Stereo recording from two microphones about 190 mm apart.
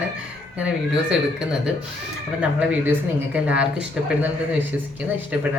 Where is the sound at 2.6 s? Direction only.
5° right (ahead or behind).